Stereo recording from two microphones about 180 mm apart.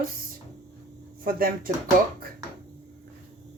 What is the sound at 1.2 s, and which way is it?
Speech, 55° right (ahead or behind).